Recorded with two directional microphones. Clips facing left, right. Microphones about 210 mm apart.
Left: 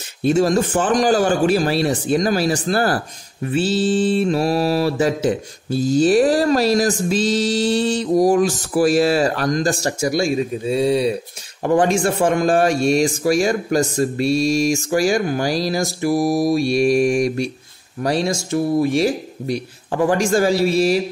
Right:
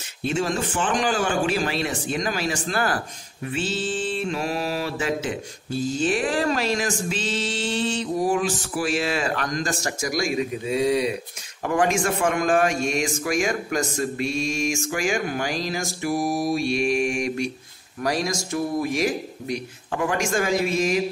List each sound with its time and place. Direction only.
0.3 s a man's voice: 40° left (ahead or behind)